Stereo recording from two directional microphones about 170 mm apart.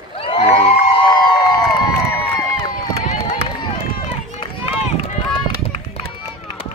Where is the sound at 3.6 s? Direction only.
30° left (ahead or behind).